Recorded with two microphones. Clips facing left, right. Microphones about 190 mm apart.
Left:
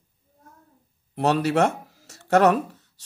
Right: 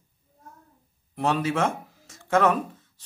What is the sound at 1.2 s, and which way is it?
Speech, 70° left (ahead or behind).